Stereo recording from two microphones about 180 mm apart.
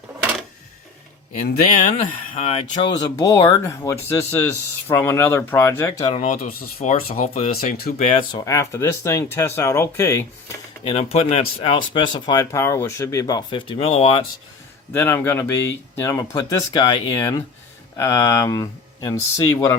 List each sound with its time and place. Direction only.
1.3 s speech: 45° left (ahead or behind)
3.2 s speech: 20° left (ahead or behind)
6.1 s speech: 40° left (ahead or behind)
7.2 s speech: 35° left (ahead or behind)
7.5 s speech: 55° left (ahead or behind)
7.9 s speech: 35° left (ahead or behind); by 10.2 s 15° left (ahead or behind)
10.8 s speech: 35° left (ahead or behind)
14.9 s speech: 15° left (ahead or behind)